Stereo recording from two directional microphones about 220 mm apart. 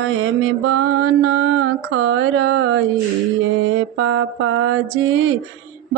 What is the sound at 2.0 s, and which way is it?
Mantra, 60° right (ahead or behind).